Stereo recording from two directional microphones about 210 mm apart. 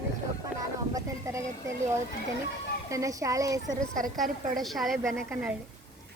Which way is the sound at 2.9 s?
15° right (ahead or behind).